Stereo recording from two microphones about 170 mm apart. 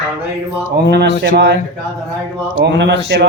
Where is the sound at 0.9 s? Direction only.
85° right.